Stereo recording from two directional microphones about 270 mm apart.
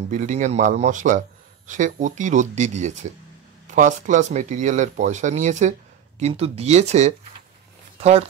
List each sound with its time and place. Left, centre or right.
0.1 s speech: right